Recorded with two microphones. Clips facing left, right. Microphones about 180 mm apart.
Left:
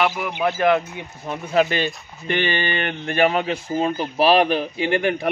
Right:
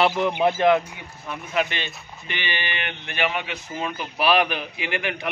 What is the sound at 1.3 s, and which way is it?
Speech, 35° left (ahead or behind).